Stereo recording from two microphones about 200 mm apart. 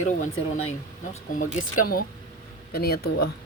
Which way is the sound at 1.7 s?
45° left (ahead or behind).